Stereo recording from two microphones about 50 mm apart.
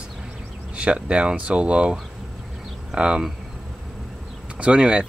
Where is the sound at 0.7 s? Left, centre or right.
Right.